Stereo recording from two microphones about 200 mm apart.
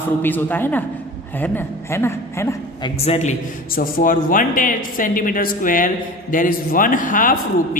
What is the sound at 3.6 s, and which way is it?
A man's voice, 45° left (ahead or behind).